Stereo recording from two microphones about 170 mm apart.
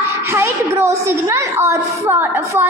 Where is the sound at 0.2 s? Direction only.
15° right (ahead or behind).